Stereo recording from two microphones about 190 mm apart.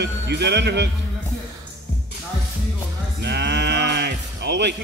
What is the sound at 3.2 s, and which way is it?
Music, 60° right (ahead or behind).